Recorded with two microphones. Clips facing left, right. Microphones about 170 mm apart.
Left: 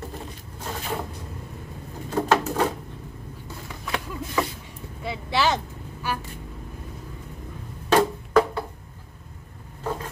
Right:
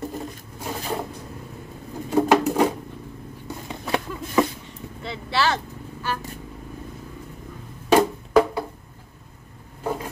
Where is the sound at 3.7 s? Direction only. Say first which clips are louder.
Right 5 dB; 25° right (ahead or behind).